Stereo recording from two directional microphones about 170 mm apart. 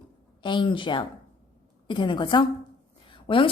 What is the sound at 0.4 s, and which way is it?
Speech, 30° left (ahead or behind).